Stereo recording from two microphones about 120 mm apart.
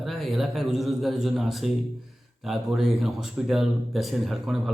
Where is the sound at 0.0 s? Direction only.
Centre (ahead or behind).